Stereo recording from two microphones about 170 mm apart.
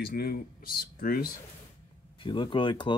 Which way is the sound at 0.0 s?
65° left (ahead or behind).